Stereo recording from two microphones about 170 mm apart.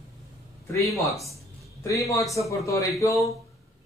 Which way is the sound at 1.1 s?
20° left (ahead or behind).